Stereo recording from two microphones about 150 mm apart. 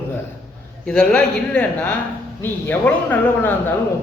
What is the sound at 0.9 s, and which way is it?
A man's voice, 5° left (ahead or behind).